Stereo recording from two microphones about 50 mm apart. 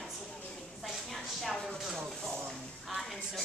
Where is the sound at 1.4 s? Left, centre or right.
Centre.